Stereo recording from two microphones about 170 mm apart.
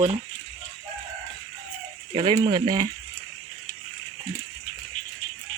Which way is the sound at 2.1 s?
30° right (ahead or behind).